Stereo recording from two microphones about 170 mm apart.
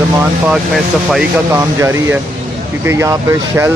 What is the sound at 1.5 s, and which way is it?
Speech, 15° right (ahead or behind).